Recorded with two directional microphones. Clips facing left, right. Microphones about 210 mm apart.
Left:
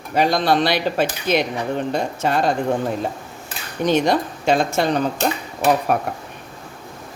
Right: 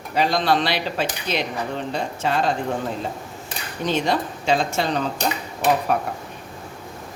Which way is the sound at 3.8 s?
55° left (ahead or behind).